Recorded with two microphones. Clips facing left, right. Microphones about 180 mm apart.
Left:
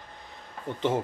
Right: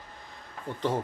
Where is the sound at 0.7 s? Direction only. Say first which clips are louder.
Left 2 dB; 25° left (ahead or behind).